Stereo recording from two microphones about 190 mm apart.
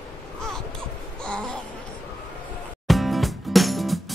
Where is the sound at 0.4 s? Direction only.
5° left (ahead or behind).